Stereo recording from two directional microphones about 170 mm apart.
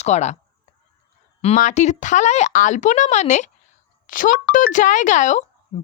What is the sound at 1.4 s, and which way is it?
Speech, 45° left (ahead or behind).